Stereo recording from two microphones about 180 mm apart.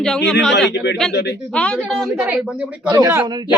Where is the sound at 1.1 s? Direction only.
75° left (ahead or behind).